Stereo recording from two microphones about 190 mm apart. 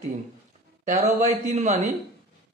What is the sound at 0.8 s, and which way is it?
Speech, 35° right (ahead or behind).